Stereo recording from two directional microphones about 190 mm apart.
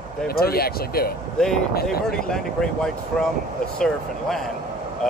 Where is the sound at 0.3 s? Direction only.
55° left (ahead or behind).